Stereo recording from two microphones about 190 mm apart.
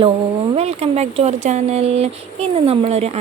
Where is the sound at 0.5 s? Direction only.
35° right (ahead or behind).